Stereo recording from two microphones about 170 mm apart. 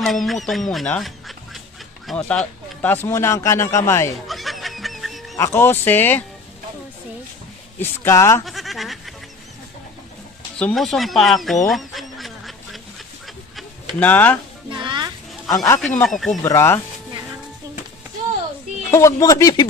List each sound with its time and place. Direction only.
0.0 s speech: centre (ahead or behind); by 4.1 s 15° left (ahead or behind)
4.3 s music: centre (ahead or behind)
5.3 s speech: 15° left (ahead or behind)
7.8 s speech: 15° left (ahead or behind)
8.5 s bleat: centre (ahead or behind)
10.6 s speech: centre (ahead or behind)
11.7 s duck: centre (ahead or behind)
13.9 s speech: 10° left (ahead or behind)
14.7 s music: 25° right (ahead or behind)
15.5 s speech: 20° left (ahead or behind)
16.1 s speech: centre (ahead or behind)
16.4 s speech: 15° left (ahead or behind)
18.9 s speech: 15° left (ahead or behind)